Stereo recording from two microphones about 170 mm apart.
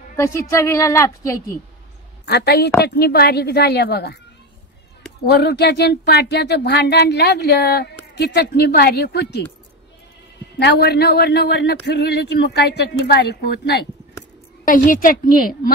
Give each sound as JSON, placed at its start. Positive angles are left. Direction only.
{"t": 0.1, "sound": "a woman's voice", "side_deg": 15}
{"t": 2.2, "sound": "speech", "side_deg": 70}
{"t": 5.2, "sound": "speech", "side_deg": 75}
{"t": 10.6, "sound": "speech", "side_deg": 75}
{"t": 14.6, "sound": "a woman's voice", "side_deg": 50}